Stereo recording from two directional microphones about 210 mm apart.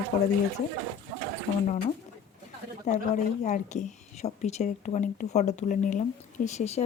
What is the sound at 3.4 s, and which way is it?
Speech, 35° left (ahead or behind).